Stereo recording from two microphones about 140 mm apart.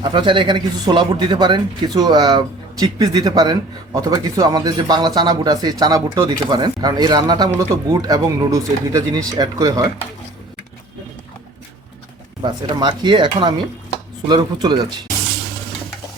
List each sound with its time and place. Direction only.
0.0 s speech: 35° right (ahead or behind)
12.8 s speech: 35° right (ahead or behind)